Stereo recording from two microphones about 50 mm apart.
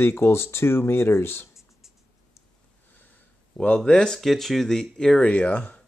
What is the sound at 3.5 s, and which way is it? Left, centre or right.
Speech, left.